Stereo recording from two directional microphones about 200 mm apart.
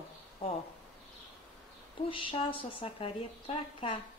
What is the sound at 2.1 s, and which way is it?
Speech, 25° left (ahead or behind).